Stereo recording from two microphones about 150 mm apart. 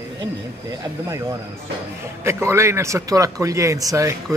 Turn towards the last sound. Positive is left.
turn(degrees=-20)  # may be behind; listen again after turning